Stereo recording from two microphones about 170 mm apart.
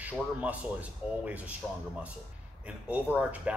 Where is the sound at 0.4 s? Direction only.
10° right (ahead or behind).